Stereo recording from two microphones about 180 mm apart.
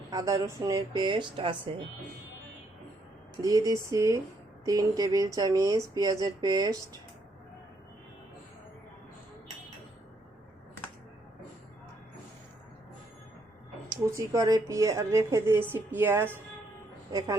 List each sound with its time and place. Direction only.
0.1 s speech: 20° right (ahead or behind)
3.4 s a woman's voice: 20° right (ahead or behind)
13.9 s a woman's voice: 20° right (ahead or behind)